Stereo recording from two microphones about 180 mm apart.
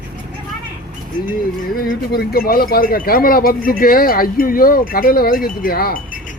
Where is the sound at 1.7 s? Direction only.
55° left (ahead or behind).